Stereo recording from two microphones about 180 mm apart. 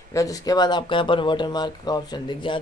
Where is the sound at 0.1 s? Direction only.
20° left (ahead or behind).